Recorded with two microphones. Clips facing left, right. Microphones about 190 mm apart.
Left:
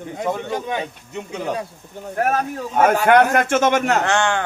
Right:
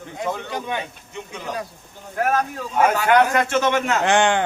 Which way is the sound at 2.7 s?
50° left (ahead or behind).